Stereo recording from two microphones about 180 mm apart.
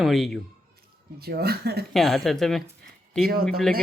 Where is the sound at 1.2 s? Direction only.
60° right (ahead or behind).